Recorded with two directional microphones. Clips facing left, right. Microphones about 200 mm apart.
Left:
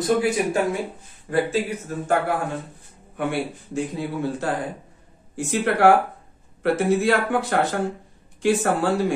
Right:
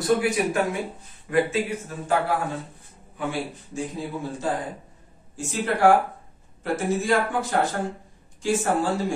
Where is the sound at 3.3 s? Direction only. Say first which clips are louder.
Left 3 dB; 70° left (ahead or behind).